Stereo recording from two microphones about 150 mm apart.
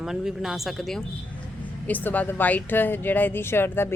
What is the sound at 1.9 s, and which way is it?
Speech, 10° left (ahead or behind).